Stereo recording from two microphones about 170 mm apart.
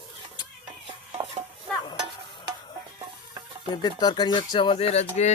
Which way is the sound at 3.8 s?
25° left (ahead or behind).